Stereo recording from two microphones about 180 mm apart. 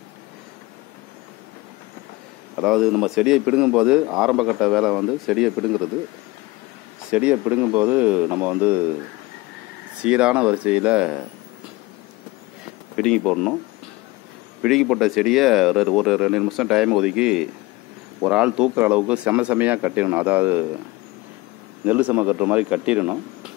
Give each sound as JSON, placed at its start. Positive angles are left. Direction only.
{"t": 2.5, "sound": "a man's voice", "side_deg": 0}
{"t": 7.1, "sound": "speech", "side_deg": -10}
{"t": 10.0, "sound": "speech", "side_deg": -5}
{"t": 12.9, "sound": "a man's voice", "side_deg": 5}
{"t": 14.6, "sound": "a man's voice", "side_deg": 0}
{"t": 21.8, "sound": "speech", "side_deg": -10}